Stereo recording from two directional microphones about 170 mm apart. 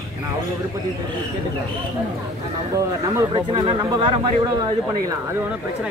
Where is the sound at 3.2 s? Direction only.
25° right (ahead or behind).